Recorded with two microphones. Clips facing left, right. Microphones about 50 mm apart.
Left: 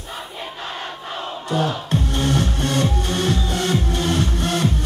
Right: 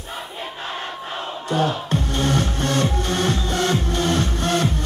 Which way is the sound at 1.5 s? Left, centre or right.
Right.